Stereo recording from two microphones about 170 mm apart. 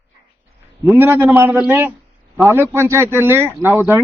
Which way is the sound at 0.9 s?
10° right (ahead or behind).